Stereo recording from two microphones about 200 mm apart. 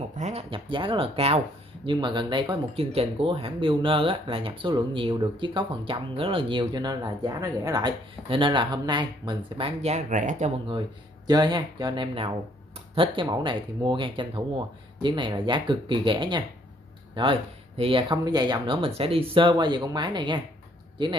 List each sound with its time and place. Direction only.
0.1 s speech: 35° right (ahead or behind)
11.2 s speech: 20° right (ahead or behind)